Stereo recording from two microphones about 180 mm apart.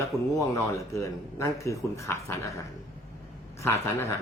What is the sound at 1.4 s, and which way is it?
Speech, 15° left (ahead or behind).